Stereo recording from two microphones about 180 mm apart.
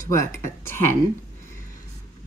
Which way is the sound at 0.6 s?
15° left (ahead or behind).